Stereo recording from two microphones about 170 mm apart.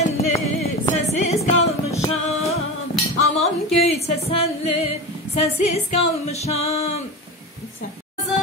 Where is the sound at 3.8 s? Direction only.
35° left (ahead or behind).